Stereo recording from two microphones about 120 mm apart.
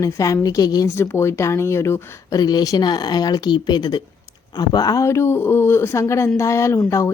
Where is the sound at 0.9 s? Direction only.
20° left (ahead or behind).